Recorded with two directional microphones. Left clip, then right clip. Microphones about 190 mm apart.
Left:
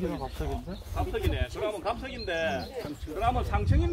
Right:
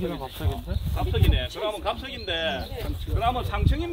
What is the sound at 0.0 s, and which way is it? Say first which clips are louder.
Speech: right 2 dB; 55° right (ahead or behind).